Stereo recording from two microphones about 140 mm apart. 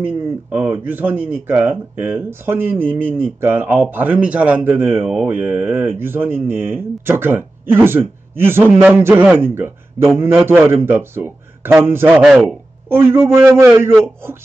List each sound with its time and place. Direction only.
0.0 s speech: 10° right (ahead or behind)
12.4 s a man's voice: 15° right (ahead or behind)